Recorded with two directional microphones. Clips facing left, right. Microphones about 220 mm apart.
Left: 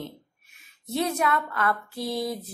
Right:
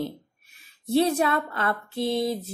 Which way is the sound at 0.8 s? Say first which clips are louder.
Right 5 dB; 30° right (ahead or behind).